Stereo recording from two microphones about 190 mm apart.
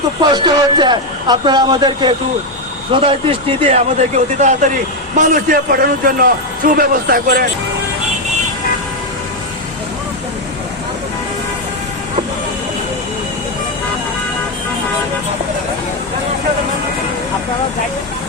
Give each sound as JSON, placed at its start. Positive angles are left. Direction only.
{"t": 0.2, "sound": "a man's voice", "side_deg": -25}